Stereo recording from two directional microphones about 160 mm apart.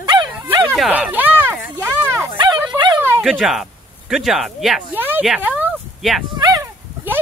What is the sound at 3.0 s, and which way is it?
Dog, 15° right (ahead or behind).